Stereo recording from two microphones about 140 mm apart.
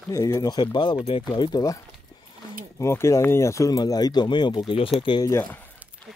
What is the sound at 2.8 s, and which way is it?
Speech, 20° left (ahead or behind).